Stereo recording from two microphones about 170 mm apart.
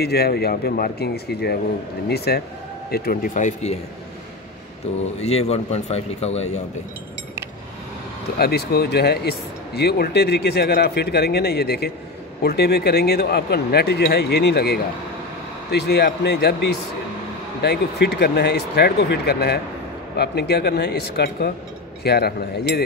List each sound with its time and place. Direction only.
0.0 s speech: 70° left (ahead or behind)
2.9 s speech: 60° left (ahead or behind)
5.2 s a man's voice: 40° left (ahead or behind)
8.4 s speech: 70° left (ahead or behind)